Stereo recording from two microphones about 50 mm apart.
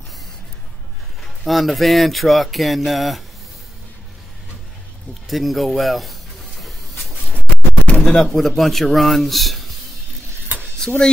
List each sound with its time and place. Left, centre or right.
1.2 s speech: centre
5.3 s a sound: centre
7.3 s scratch: left
8.3 s speech: centre
10.8 s speech: centre